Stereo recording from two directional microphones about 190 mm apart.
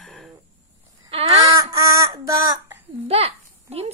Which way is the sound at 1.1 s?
30° right (ahead or behind).